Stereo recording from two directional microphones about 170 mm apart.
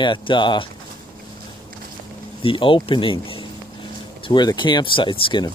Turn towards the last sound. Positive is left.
turn(degrees=30)  # may be behind; listen again after turning